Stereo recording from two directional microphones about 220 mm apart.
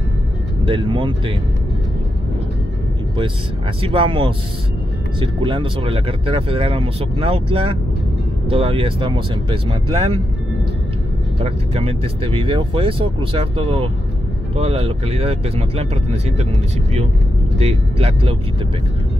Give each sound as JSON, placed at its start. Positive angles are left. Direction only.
{"t": 0.7, "sound": "speech", "side_deg": -20}
{"t": 3.8, "sound": "speech", "side_deg": -25}
{"t": 11.4, "sound": "speech", "side_deg": -25}
{"t": 17.6, "sound": "speech", "side_deg": -25}